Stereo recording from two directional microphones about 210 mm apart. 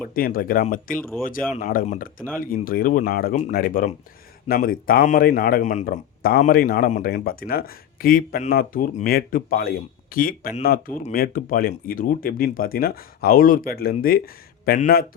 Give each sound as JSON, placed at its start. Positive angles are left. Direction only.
{"t": 0.1, "sound": "speech", "side_deg": 45}